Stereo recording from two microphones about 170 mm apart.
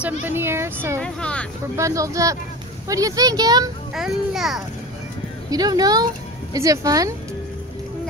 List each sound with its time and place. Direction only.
0.0 s speech: 10° right (ahead or behind)
1.0 s speech: 5° left (ahead or behind)
1.8 s speech: 20° right (ahead or behind)
3.9 s a child's voice: centre (ahead or behind)
5.5 s speech: 20° right (ahead or behind)